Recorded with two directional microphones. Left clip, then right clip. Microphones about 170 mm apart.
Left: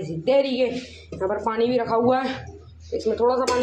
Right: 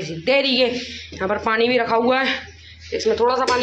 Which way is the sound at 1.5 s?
15° left (ahead or behind).